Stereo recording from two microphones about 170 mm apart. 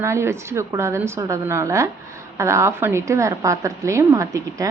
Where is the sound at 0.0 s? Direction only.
15° right (ahead or behind).